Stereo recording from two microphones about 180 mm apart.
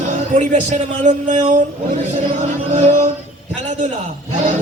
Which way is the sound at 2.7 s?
40° right (ahead or behind).